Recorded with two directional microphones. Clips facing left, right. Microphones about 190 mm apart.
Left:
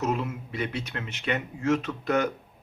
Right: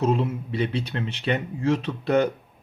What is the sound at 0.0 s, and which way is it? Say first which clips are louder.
Speech: right 5 dB; 30° right (ahead or behind).